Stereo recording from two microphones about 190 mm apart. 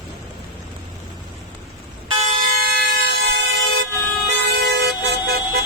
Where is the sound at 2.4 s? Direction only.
50° right (ahead or behind).